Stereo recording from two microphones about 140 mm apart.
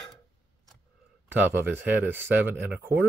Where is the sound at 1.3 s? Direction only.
15° right (ahead or behind).